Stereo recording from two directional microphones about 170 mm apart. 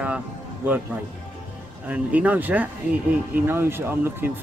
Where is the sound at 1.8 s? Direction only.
10° right (ahead or behind).